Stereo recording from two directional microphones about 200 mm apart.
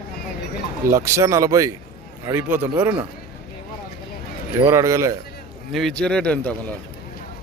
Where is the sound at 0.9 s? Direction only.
15° right (ahead or behind).